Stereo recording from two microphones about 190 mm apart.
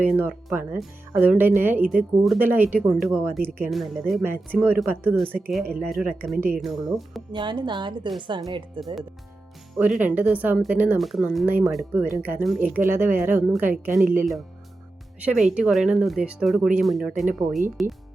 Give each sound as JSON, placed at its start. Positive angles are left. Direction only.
{"t": 0.0, "sound": "speech", "side_deg": -10}
{"t": 3.7, "sound": "speech", "side_deg": 0}
{"t": 7.3, "sound": "a woman's voice", "side_deg": -25}
{"t": 9.7, "sound": "speech", "side_deg": -5}
{"t": 15.2, "sound": "speech", "side_deg": -5}